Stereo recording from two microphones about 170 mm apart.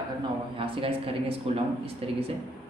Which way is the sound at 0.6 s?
30° right (ahead or behind).